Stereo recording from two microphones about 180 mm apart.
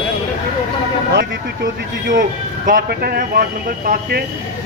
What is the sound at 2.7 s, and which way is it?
Speech, 55° right (ahead or behind).